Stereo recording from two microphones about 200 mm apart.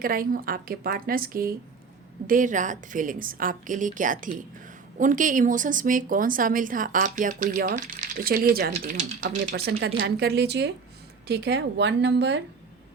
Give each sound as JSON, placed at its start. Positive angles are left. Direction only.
{"t": 0.0, "sound": "a woman's voice", "side_deg": -45}